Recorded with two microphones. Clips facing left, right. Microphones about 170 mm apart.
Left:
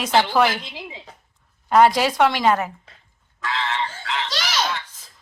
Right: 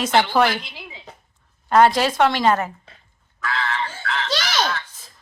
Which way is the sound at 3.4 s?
20° left (ahead or behind).